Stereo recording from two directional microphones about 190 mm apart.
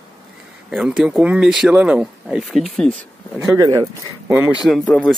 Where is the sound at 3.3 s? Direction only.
15° right (ahead or behind).